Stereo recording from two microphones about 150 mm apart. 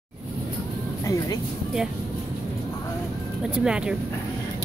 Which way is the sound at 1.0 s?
20° left (ahead or behind).